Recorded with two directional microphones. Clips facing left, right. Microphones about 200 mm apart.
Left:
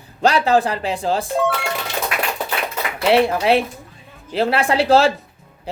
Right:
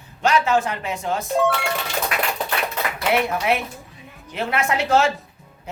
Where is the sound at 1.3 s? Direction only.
Centre (ahead or behind).